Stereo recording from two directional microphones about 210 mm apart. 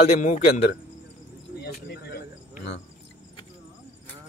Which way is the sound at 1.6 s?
50° left (ahead or behind).